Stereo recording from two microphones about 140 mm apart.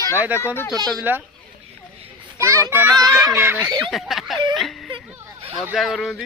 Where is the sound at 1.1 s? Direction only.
10° right (ahead or behind).